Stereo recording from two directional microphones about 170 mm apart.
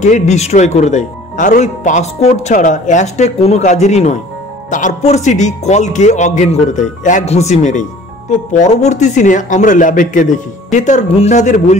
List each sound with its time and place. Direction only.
0.0 s speech: 45° left (ahead or behind)